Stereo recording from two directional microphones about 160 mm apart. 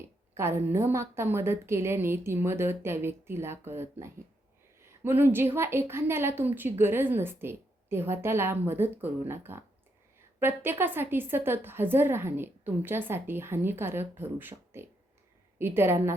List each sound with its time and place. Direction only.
0.0 s a woman's voice: 15° right (ahead or behind)